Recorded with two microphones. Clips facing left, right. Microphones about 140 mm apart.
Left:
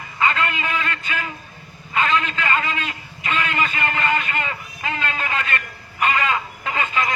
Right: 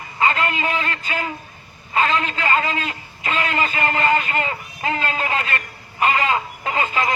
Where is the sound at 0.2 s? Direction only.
30° right (ahead or behind).